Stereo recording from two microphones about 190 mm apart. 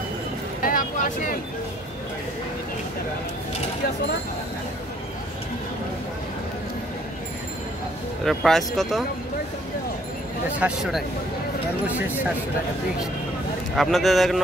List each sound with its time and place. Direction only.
0.7 s vehicle: 45° left (ahead or behind)
8.3 s speech: centre (ahead or behind)
10.6 s speech: centre (ahead or behind)
13.7 s speech: centre (ahead or behind)